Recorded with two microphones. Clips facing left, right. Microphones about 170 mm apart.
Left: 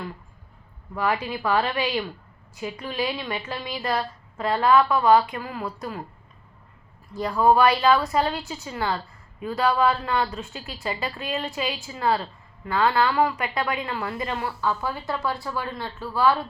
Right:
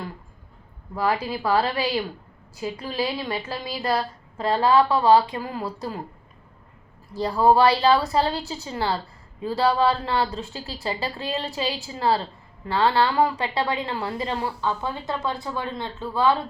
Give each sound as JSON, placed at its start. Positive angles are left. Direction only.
{"t": 0.9, "sound": "a woman's voice", "side_deg": -35}
{"t": 7.1, "sound": "a woman's voice", "side_deg": -30}